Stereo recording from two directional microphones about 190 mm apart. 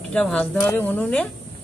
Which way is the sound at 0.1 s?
5° left (ahead or behind).